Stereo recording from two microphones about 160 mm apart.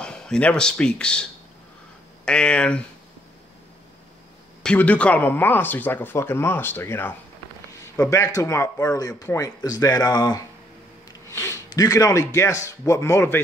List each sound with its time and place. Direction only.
0.0 s speech: 5° left (ahead or behind)
4.6 s speech: 10° left (ahead or behind)